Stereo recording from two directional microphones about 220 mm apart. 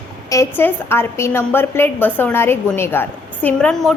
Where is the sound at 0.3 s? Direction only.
10° left (ahead or behind).